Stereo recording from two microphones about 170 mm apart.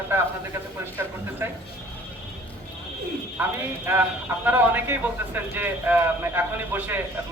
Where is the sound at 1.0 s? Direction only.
15° right (ahead or behind).